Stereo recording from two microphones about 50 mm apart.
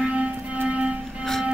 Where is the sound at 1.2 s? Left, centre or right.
Centre.